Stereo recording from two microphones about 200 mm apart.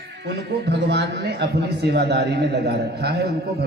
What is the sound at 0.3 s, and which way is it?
A man's voice, 60° right (ahead or behind).